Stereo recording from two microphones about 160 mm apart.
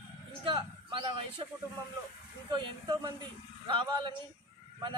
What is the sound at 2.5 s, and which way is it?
A man's voice, 25° right (ahead or behind).